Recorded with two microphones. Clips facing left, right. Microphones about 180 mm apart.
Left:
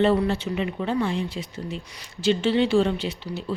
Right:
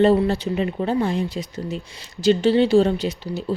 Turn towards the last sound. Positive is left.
turn(degrees=-40)  # may be behind; listen again after turning